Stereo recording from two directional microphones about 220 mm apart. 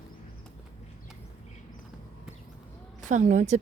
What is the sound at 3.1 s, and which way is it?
Speech, 35° right (ahead or behind).